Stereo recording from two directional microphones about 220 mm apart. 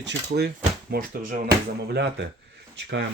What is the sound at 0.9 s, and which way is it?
Speech, 40° right (ahead or behind).